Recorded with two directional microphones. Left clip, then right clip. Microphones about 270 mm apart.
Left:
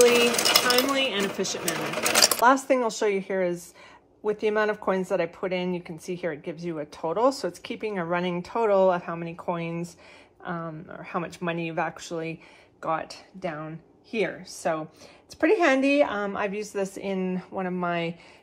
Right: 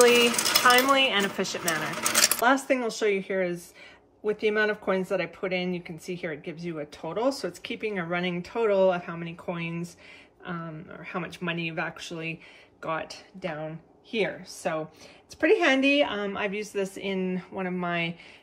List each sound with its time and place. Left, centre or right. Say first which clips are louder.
0.0 s sewing machine: even; centre
0.3 s sewing machine: even; centre
1.1 s speech: right 1 dB; centre
1.9 s speech: left 5 dB; centre